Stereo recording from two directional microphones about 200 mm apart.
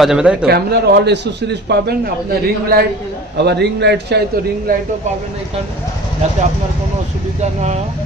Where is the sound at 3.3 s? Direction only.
55° right (ahead or behind).